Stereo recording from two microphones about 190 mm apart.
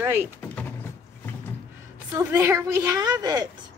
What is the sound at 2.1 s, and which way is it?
A woman's voice, 15° right (ahead or behind).